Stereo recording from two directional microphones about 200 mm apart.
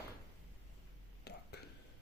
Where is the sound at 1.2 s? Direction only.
55° left (ahead or behind).